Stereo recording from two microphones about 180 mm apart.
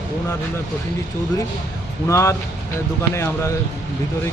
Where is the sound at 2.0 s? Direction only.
15° left (ahead or behind).